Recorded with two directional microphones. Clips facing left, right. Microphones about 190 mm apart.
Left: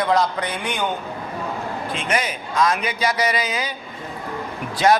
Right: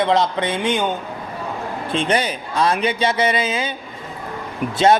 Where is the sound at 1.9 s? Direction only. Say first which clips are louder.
Right 6 dB; 30° right (ahead or behind).